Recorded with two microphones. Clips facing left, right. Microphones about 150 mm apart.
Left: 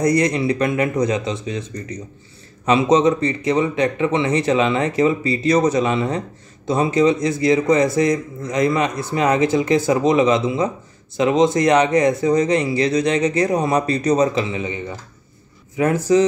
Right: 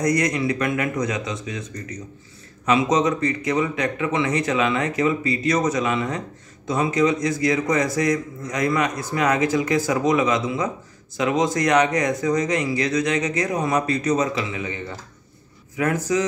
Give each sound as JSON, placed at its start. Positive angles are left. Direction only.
{"t": 0.0, "sound": "a man's voice", "side_deg": 30}